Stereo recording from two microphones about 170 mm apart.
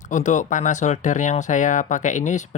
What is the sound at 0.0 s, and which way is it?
Speech, 45° left (ahead or behind).